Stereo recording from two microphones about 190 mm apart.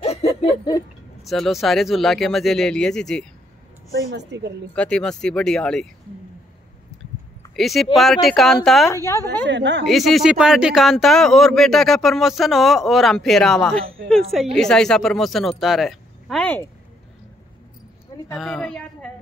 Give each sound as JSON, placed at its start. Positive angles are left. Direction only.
{"t": 0.4, "sound": "laughter", "side_deg": 20}
{"t": 1.2, "sound": "a man's voice", "side_deg": 0}
{"t": 4.1, "sound": "a woman's voice", "side_deg": -65}
{"t": 4.7, "sound": "a man's voice", "side_deg": 5}
{"t": 7.5, "sound": "a man's voice", "side_deg": 0}
{"t": 8.9, "sound": "a woman's voice", "side_deg": 15}
{"t": 9.5, "sound": "a woman's voice", "side_deg": -70}
{"t": 9.8, "sound": "a man's voice", "side_deg": 0}
{"t": 18.3, "sound": "a man's voice", "side_deg": 0}